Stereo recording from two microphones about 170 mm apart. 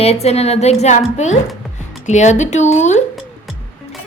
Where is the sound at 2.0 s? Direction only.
45° left (ahead or behind).